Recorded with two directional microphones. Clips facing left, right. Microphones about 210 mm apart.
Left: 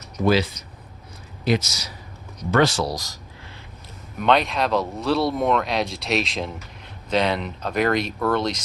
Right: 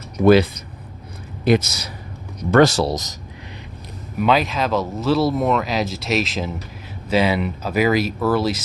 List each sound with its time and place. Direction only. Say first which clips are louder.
0.3 s a man's voice: right 7 dB; 55° right (ahead or behind)
2.5 s speech: right 5 dB; 45° right (ahead or behind)
2.8 s speech: right 5 dB; 20° right (ahead or behind)
4.2 s speech: right 1 dB; 5° right (ahead or behind)